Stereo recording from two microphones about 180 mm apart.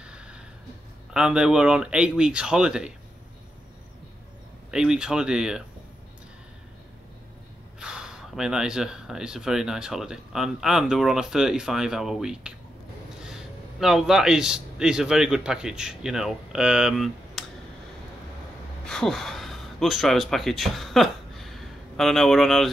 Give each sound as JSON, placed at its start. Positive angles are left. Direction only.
{"t": 0.0, "sound": "a sound", "side_deg": -5}
{"t": 1.1, "sound": "speech", "side_deg": -5}
{"t": 4.6, "sound": "speech", "side_deg": -5}
{"t": 7.8, "sound": "a man's voice", "side_deg": -5}
{"t": 18.9, "sound": "speech", "side_deg": 5}